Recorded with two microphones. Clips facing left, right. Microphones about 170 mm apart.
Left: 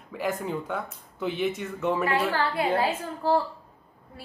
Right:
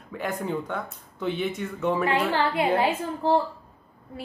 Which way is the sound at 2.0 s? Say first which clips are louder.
Right 2 dB; 20° right (ahead or behind).